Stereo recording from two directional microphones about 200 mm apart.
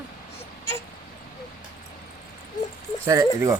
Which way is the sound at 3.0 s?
15° right (ahead or behind).